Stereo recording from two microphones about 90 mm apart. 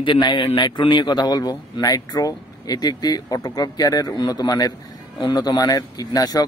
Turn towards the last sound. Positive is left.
turn(degrees=45)  # may be behind; listen again after turning